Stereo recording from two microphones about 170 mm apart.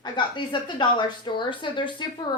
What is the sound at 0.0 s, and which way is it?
A woman's voice, 25° left (ahead or behind).